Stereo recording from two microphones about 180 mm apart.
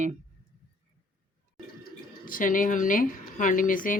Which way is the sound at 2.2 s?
50° left (ahead or behind).